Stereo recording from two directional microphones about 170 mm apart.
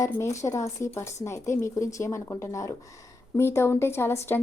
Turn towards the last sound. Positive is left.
turn(degrees=15)  # may be behind; listen again after turning